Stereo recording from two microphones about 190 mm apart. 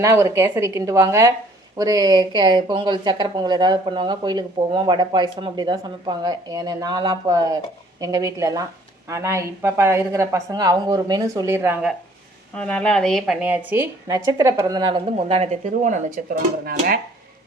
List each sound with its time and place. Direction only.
0.0 s a woman's voice: 15° right (ahead or behind)
12.5 s a woman's voice: 5° left (ahead or behind); by 17.0 s 50° right (ahead or behind)